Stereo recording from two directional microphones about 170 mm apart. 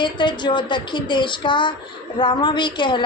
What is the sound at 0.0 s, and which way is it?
A woman's voice, 25° left (ahead or behind).